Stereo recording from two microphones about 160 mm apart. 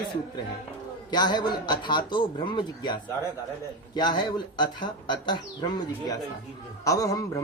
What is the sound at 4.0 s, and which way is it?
Speech, 30° left (ahead or behind).